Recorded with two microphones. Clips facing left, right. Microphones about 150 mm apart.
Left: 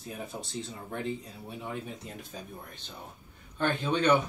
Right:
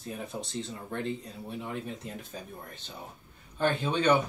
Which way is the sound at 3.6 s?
5° right (ahead or behind).